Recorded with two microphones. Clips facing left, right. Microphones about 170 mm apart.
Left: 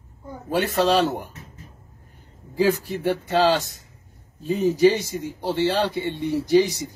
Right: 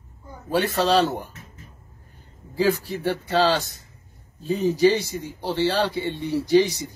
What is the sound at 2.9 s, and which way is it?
Speech, 15° left (ahead or behind).